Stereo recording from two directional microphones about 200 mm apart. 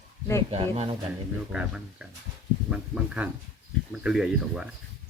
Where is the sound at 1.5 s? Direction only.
5° right (ahead or behind).